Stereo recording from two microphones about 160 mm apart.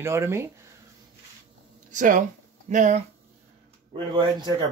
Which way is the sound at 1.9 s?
50° right (ahead or behind).